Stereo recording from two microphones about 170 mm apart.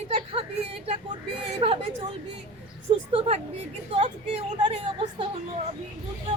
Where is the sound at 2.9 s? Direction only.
30° right (ahead or behind).